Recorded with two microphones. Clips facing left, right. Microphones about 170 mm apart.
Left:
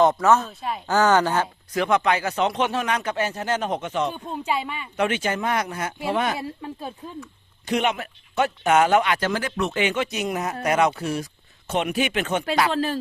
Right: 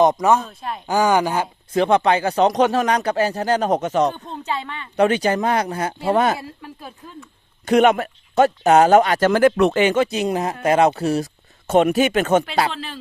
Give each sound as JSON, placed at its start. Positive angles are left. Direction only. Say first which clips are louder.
{"t": 0.0, "sound": "a woman's voice", "louder": "right 2 dB", "side_deg": -15}
{"t": 0.3, "sound": "speech", "louder": "right 1 dB", "side_deg": 0}
{"t": 0.9, "sound": "a woman's voice", "louder": "right 1 dB", "side_deg": -15}
{"t": 1.7, "sound": "speech", "louder": "right 5 dB", "side_deg": -30}
{"t": 4.1, "sound": "speech", "louder": "left 1 dB", "side_deg": 10}
{"t": 4.9, "sound": "speech", "louder": "right 7 dB", "side_deg": -35}
{"t": 6.4, "sound": "speech", "louder": "left 4 dB", "side_deg": 25}
{"t": 7.7, "sound": "speech", "louder": "right 9 dB", "side_deg": -50}
{"t": 9.7, "sound": "speech", "louder": "right 7 dB", "side_deg": -40}
{"t": 12.7, "sound": "speech", "louder": "left 9 dB", "side_deg": 45}